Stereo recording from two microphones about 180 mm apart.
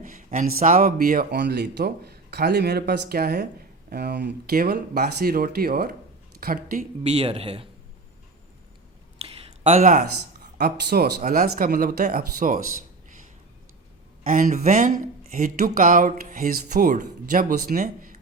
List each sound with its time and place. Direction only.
0.0 s speech: 45° right (ahead or behind)
7.1 s speech: 35° right (ahead or behind)
9.1 s a sound: 30° right (ahead or behind)
10.6 s speech: 60° right (ahead or behind)
14.3 s speech: 45° right (ahead or behind)